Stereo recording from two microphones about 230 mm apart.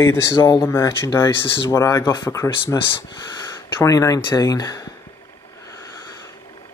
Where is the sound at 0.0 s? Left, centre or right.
Centre.